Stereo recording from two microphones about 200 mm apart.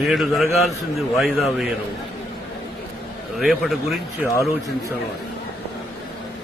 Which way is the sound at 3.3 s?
Centre (ahead or behind).